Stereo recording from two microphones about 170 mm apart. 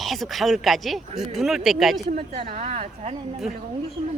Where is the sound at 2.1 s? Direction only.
35° right (ahead or behind).